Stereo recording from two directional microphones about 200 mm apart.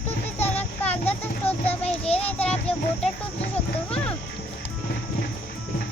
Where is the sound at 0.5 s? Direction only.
10° left (ahead or behind).